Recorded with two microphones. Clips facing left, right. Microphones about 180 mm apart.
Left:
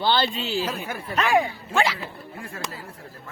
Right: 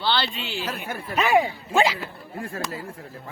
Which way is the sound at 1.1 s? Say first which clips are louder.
Right 1 dB; 10° right (ahead or behind).